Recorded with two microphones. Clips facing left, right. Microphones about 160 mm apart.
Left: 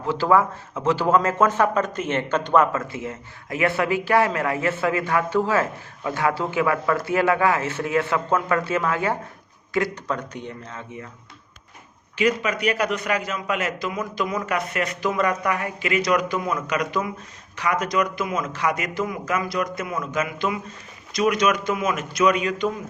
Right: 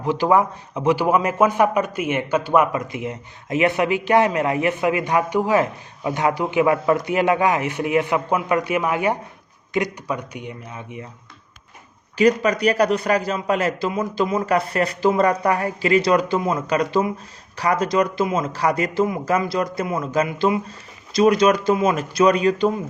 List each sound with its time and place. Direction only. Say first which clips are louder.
0.0 s speech: right 2 dB; 15° right (ahead or behind)
12.1 s a man's voice: right 5 dB; 40° right (ahead or behind)